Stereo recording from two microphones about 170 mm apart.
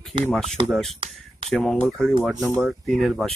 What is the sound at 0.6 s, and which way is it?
Speech, centre (ahead or behind).